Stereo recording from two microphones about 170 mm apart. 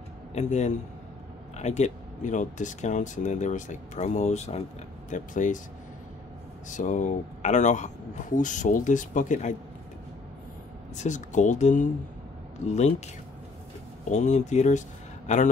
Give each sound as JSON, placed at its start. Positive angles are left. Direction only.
{"t": 0.3, "sound": "speech", "side_deg": 45}
{"t": 6.7, "sound": "speech", "side_deg": 45}
{"t": 11.0, "sound": "speech", "side_deg": 45}
{"t": 14.0, "sound": "speech", "side_deg": 45}